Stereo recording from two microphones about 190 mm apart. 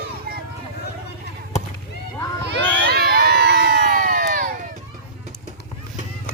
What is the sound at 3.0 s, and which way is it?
Crowd, 55° right (ahead or behind).